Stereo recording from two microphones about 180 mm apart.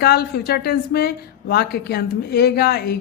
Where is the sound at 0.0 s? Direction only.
60° left (ahead or behind).